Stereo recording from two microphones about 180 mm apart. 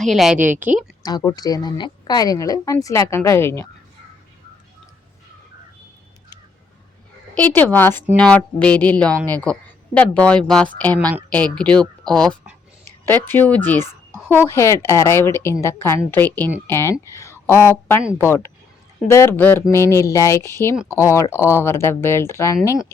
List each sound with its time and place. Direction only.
0.0 s speech: centre (ahead or behind)
1.0 s a woman's voice: 20° left (ahead or behind)
7.3 s speech: 10° left (ahead or behind)